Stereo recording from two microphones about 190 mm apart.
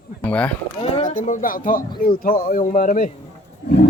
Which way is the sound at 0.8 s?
40° left (ahead or behind).